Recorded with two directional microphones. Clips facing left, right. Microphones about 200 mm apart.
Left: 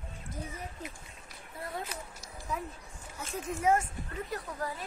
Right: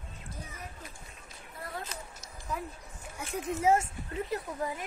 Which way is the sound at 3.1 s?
20° right (ahead or behind).